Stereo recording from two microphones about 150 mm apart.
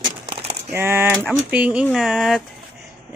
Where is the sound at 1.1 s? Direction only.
Centre (ahead or behind).